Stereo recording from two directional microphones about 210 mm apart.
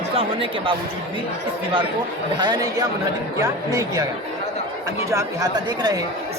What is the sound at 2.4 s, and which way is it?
Speech, 20° right (ahead or behind).